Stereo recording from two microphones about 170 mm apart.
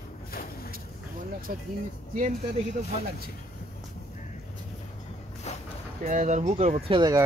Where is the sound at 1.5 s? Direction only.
55° right (ahead or behind).